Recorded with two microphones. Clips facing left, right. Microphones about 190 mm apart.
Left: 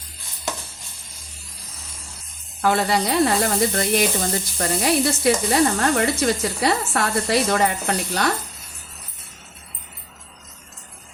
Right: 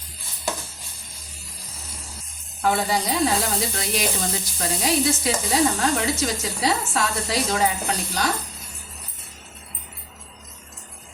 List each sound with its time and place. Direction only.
2.6 s sizzle: 70° left (ahead or behind)